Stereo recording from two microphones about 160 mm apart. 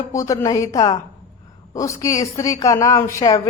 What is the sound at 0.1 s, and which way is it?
A woman's voice, 20° left (ahead or behind).